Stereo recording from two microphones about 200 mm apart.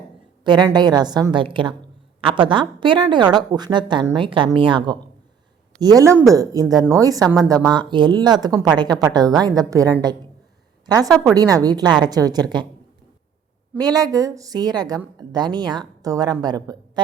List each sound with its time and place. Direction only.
0.4 s a woman's voice: 20° right (ahead or behind)
13.7 s a woman's voice: 20° right (ahead or behind)